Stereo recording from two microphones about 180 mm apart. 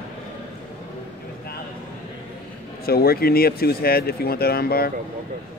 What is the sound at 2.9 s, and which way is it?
Speech, 60° left (ahead or behind).